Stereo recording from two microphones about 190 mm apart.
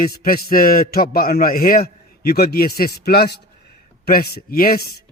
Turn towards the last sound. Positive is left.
turn(degrees=55)  # may be behind; listen again after turning